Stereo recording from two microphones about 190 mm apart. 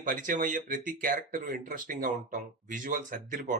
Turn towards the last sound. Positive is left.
turn(degrees=-45)  # may be behind; listen again after turning